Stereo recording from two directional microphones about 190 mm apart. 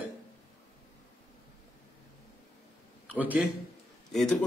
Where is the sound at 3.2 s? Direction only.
10° right (ahead or behind).